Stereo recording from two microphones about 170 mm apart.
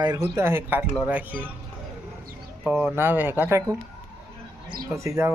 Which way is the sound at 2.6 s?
10° right (ahead or behind).